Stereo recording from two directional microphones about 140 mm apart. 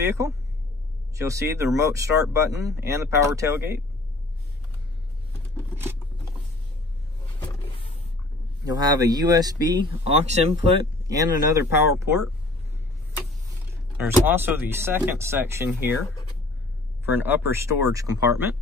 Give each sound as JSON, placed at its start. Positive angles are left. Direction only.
{"t": 0.2, "sound": "speech", "side_deg": -25}
{"t": 5.8, "sound": "scissors", "side_deg": -15}
{"t": 7.3, "sound": "vehicle", "side_deg": 35}
{"t": 8.6, "sound": "speech", "side_deg": -25}
{"t": 10.0, "sound": "speech", "side_deg": -50}
{"t": 11.1, "sound": "speech", "side_deg": -25}
{"t": 13.9, "sound": "speech", "side_deg": -15}
{"t": 17.0, "sound": "speech", "side_deg": -15}